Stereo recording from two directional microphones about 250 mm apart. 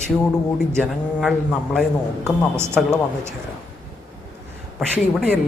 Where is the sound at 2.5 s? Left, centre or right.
Centre.